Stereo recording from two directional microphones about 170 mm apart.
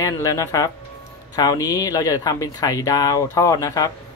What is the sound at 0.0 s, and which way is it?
Speech, 20° left (ahead or behind).